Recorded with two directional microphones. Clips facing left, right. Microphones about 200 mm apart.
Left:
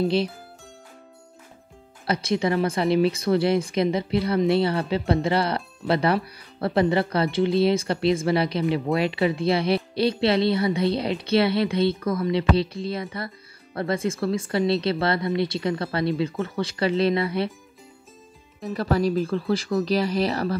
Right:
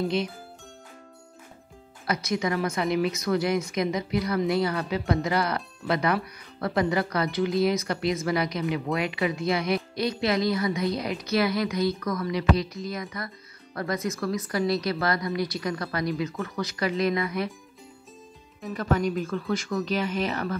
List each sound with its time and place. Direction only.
0.0 s speech: 30° left (ahead or behind)
2.0 s a woman's voice: 30° left (ahead or behind)
18.6 s speech: 35° left (ahead or behind)